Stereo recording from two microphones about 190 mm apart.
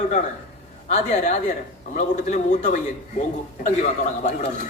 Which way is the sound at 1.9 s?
40° left (ahead or behind).